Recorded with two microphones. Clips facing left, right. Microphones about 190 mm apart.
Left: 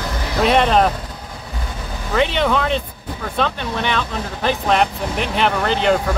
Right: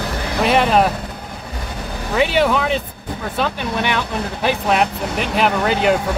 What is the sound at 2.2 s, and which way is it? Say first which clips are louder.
Speech: right 1 dB; 5° right (ahead or behind).